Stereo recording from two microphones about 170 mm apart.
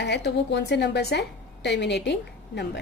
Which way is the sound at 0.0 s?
85° left.